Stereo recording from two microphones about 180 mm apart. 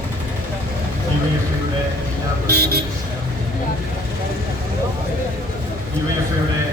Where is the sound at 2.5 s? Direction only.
60° right (ahead or behind).